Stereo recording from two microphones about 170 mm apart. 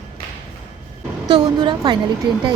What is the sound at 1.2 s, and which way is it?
Speech, 25° right (ahead or behind).